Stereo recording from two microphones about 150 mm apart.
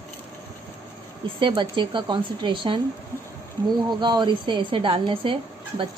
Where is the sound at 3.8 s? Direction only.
30° right (ahead or behind).